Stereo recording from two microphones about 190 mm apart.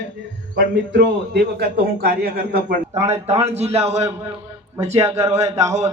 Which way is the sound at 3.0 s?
35° right (ahead or behind).